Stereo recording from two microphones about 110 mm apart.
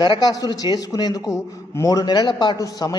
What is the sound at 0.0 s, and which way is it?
A man's voice, 40° left (ahead or behind).